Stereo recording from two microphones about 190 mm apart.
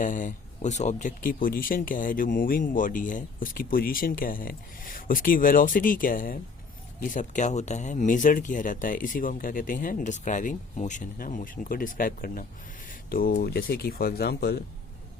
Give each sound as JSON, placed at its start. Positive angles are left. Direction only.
{"t": 0.0, "sound": "speech", "side_deg": 40}